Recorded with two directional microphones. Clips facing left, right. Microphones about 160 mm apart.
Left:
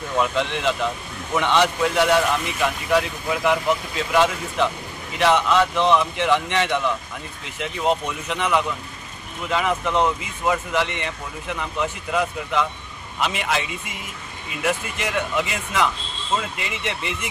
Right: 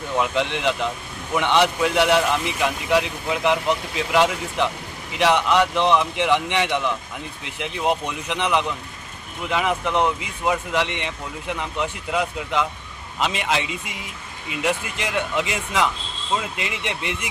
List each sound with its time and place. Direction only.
0.2 s a man's voice: 15° right (ahead or behind)